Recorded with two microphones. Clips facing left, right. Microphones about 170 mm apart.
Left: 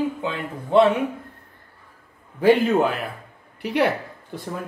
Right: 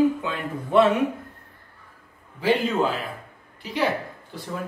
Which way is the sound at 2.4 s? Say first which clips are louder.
Left 5 dB; 60° left (ahead or behind).